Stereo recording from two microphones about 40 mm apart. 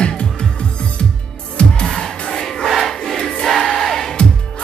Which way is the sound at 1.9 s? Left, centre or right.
Centre.